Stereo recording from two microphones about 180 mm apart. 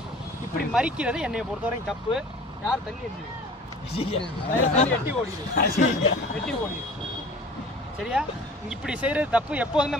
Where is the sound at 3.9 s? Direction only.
30° left (ahead or behind).